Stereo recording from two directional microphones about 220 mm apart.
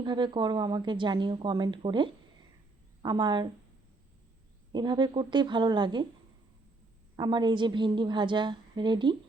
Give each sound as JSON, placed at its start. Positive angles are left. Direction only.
{"t": 0.0, "sound": "speech", "side_deg": -20}
{"t": 4.7, "sound": "speech", "side_deg": -20}
{"t": 7.2, "sound": "speech", "side_deg": -20}